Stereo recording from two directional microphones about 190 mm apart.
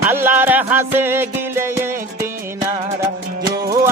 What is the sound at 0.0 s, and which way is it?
Music, 10° right (ahead or behind).